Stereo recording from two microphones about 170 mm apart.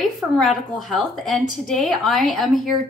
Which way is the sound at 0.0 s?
Centre (ahead or behind).